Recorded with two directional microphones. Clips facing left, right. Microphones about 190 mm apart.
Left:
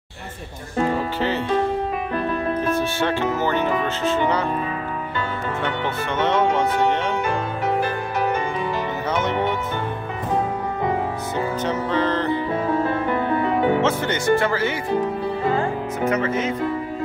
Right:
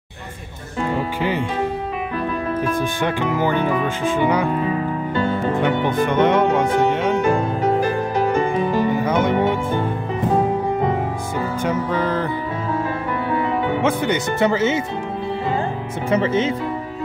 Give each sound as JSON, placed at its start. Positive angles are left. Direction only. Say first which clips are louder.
{"t": 2.7, "sound": "speech", "louder": "even", "side_deg": -15}
{"t": 8.9, "sound": "music", "louder": "right 5 dB", "side_deg": -10}
{"t": 11.6, "sound": "speech", "louder": "right 2 dB", "side_deg": -10}
{"t": 13.7, "sound": "speech", "louder": "right 2 dB", "side_deg": -15}
{"t": 16.1, "sound": "speech", "louder": "right 5 dB", "side_deg": -30}